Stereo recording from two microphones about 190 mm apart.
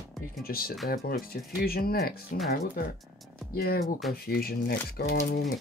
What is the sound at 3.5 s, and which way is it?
Speech, 55° left (ahead or behind).